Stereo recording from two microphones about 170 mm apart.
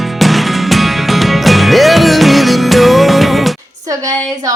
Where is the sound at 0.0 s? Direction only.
Centre (ahead or behind).